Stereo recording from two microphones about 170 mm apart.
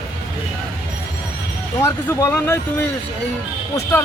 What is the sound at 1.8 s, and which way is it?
Speech, 15° left (ahead or behind).